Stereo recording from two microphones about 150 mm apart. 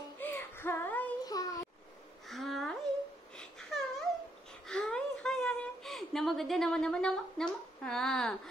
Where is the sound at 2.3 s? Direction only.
Centre (ahead or behind).